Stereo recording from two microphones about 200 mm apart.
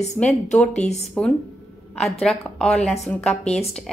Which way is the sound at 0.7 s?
35° left (ahead or behind).